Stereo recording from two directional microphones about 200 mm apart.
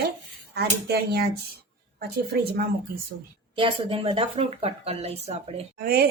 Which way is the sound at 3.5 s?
25° right (ahead or behind).